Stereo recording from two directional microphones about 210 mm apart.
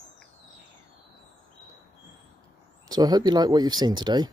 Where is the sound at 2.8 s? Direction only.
20° right (ahead or behind).